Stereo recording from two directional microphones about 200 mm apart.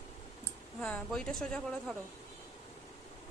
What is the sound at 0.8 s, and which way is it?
Speech, 5° left (ahead or behind).